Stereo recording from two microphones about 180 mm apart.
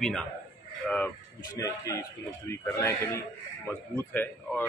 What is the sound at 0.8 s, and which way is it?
Speech, 10° left (ahead or behind).